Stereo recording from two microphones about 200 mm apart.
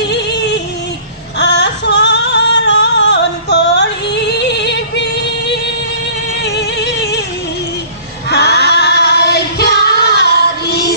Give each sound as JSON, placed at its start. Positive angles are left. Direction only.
{"t": 0.1, "sound": "yodeling", "side_deg": 60}
{"t": 1.4, "sound": "music", "side_deg": 60}
{"t": 6.4, "sound": "a sound", "side_deg": 55}
{"t": 8.3, "sound": "music", "side_deg": 55}